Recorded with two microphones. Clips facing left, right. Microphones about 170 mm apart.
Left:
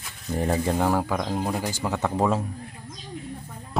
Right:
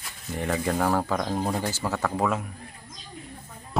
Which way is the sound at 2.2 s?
30° left (ahead or behind).